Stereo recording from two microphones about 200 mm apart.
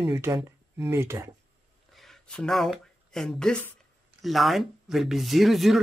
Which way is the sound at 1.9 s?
Centre (ahead or behind).